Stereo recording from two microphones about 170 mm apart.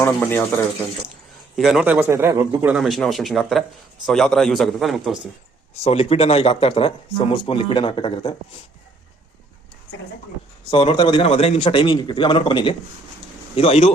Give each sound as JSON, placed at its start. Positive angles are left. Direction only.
{"t": 0.0, "sound": "speech", "side_deg": 10}
{"t": 1.5, "sound": "a man's voice", "side_deg": -5}
{"t": 2.7, "sound": "a man's voice", "side_deg": 0}
{"t": 5.8, "sound": "a man's voice", "side_deg": 35}
{"t": 10.7, "sound": "a man's voice", "side_deg": 30}